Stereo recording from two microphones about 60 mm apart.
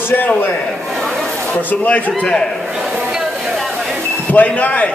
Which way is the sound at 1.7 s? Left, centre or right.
Left.